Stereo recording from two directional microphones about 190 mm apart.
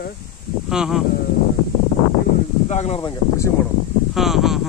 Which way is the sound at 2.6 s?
35° left (ahead or behind).